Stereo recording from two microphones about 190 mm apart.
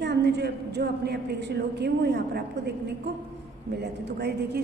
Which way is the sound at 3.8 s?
60° right (ahead or behind).